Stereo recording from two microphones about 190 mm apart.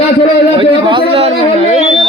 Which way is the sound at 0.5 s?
25° right (ahead or behind).